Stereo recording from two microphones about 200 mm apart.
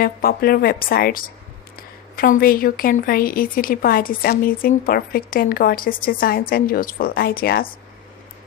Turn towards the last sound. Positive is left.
turn(degrees=50)  # may be behind; listen again after turning